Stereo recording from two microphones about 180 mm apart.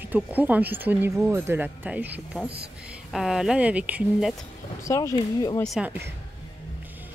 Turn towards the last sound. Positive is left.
turn(degrees=-10)  # may be behind; listen again after turning